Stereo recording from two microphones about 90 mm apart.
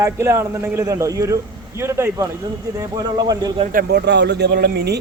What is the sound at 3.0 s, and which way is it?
Speech, 45° right (ahead or behind).